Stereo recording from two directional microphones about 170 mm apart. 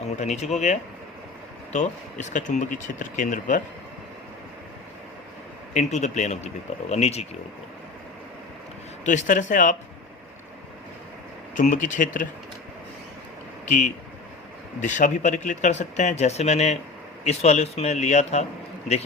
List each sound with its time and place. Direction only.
0.0 s speech: 40° left (ahead or behind)
5.7 s speech: 45° left (ahead or behind)
9.0 s speech: 50° left (ahead or behind)
11.5 s speech: 50° left (ahead or behind)
13.7 s speech: 50° left (ahead or behind)